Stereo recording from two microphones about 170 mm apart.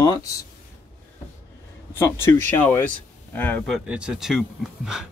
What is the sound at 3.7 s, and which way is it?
Speech, 5° right (ahead or behind).